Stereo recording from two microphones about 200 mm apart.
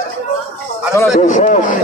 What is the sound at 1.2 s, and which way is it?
Speech, 35° left (ahead or behind).